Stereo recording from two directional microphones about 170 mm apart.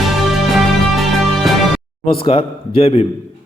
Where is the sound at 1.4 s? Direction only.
Centre (ahead or behind).